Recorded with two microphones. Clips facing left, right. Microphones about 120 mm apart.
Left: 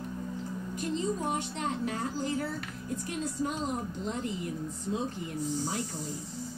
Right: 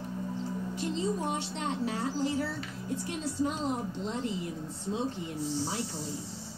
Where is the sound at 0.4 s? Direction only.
30° right (ahead or behind).